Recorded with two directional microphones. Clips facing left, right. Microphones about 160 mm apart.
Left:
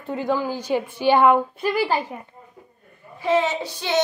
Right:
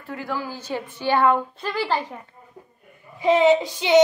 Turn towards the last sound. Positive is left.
turn(degrees=-15)  # may be behind; listen again after turning